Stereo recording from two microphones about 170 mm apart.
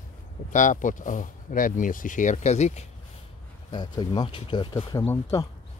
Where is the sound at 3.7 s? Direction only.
25° left (ahead or behind).